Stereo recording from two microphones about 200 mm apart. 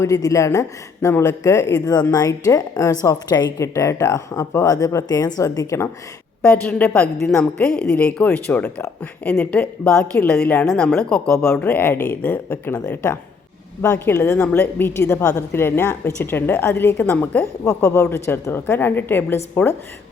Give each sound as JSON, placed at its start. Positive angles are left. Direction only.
{"t": 0.0, "sound": "a woman's voice", "side_deg": 15}